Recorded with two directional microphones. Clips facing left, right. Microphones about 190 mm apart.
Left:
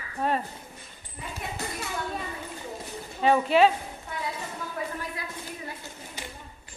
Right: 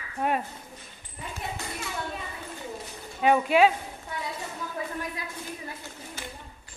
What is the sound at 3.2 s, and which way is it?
Speech, 10° right (ahead or behind).